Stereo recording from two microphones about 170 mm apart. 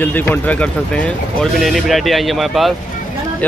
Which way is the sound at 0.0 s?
10° left (ahead or behind).